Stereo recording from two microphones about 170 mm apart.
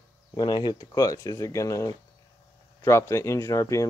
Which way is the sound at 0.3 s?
25° left (ahead or behind).